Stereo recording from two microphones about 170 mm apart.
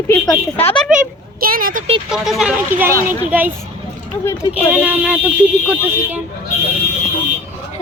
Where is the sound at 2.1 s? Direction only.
Centre (ahead or behind).